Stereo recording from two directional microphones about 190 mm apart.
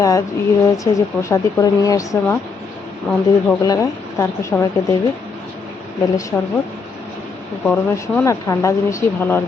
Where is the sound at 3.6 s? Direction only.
15° left (ahead or behind).